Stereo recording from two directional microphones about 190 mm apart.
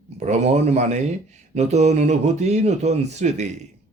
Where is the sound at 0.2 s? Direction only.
35° right (ahead or behind).